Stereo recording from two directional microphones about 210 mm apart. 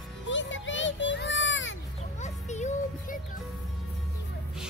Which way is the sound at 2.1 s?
35° left (ahead or behind).